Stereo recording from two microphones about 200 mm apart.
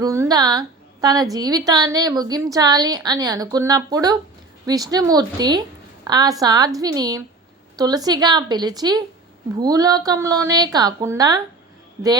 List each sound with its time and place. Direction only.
0.0 s a woman's voice: 15° right (ahead or behind)